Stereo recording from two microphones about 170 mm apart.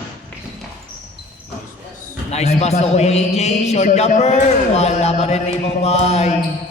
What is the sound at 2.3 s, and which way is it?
A man's voice, 40° left (ahead or behind).